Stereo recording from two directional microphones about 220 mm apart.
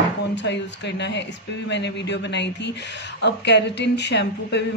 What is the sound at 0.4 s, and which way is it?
A woman's voice, 50° left (ahead or behind).